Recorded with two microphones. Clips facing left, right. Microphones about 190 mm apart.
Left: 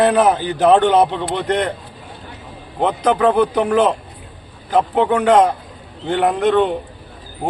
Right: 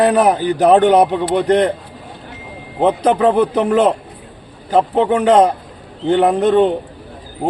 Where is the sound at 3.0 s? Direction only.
25° right (ahead or behind).